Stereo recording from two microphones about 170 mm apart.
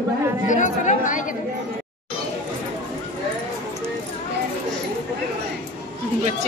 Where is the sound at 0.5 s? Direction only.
45° left (ahead or behind).